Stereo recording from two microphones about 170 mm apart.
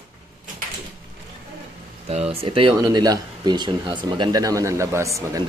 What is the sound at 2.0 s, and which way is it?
Speech, 35° right (ahead or behind).